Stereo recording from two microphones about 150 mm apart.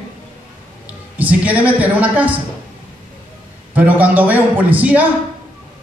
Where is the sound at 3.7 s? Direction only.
10° right (ahead or behind).